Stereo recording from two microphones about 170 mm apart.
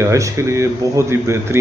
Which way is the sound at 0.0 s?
20° right (ahead or behind).